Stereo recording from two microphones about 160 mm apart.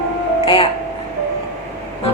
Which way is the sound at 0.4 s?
35° left (ahead or behind).